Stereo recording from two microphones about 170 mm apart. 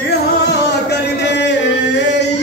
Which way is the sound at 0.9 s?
90° left.